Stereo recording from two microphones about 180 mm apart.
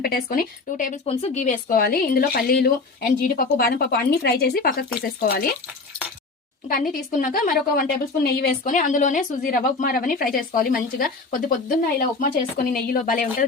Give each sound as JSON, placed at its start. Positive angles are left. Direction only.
{"t": 0.0, "sound": "a woman's voice", "side_deg": 55}
{"t": 1.0, "sound": "speech", "side_deg": 35}
{"t": 6.7, "sound": "a woman's voice", "side_deg": 50}
{"t": 7.8, "sound": "a woman's voice", "side_deg": 60}